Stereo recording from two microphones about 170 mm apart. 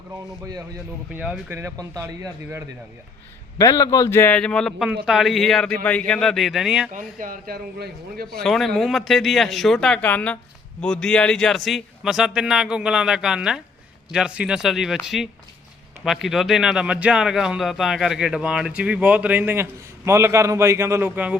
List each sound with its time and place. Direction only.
1.1 s a man's voice: 10° right (ahead or behind)
3.6 s a man's voice: 20° left (ahead or behind); by 6.9 s 5° right (ahead or behind)
7.2 s a man's voice: 55° right (ahead or behind)
8.3 s a man's voice: centre (ahead or behind)